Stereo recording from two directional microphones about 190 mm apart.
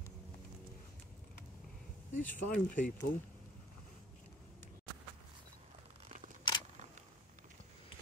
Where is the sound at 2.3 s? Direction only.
45° left (ahead or behind).